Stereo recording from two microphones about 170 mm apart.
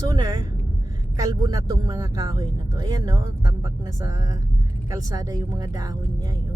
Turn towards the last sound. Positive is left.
turn(degrees=-20)  # may be behind; listen again after turning